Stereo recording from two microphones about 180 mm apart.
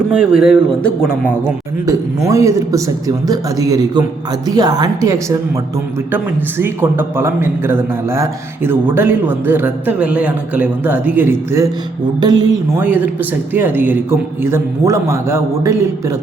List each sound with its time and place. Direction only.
0.2 s speech: 5° right (ahead or behind)
1.9 s a man's voice: 15° right (ahead or behind)